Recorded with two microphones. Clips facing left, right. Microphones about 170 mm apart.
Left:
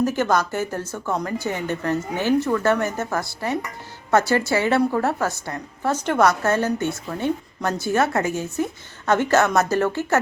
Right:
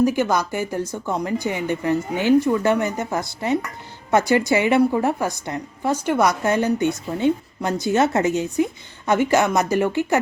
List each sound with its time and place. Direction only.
0.0 s a woman's voice: 10° right (ahead or behind)